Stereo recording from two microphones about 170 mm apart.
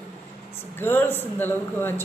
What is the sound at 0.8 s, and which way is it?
A woman's voice, 10° left (ahead or behind).